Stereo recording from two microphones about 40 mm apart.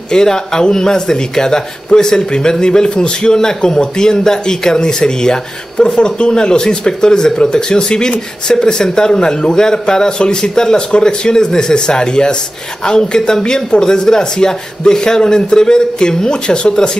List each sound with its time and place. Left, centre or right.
0.1 s a man's voice: centre